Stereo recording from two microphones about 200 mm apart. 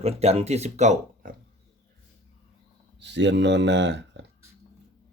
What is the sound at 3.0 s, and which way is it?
Speech, 60° right (ahead or behind).